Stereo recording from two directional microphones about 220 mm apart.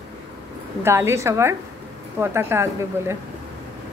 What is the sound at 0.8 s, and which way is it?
A woman's voice, 10° right (ahead or behind).